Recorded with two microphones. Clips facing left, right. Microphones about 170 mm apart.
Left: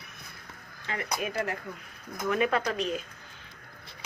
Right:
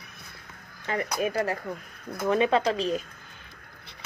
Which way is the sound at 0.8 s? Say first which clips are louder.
Right 5 dB; 40° right (ahead or behind).